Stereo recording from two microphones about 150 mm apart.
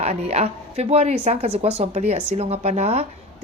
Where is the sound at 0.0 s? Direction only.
45° right (ahead or behind).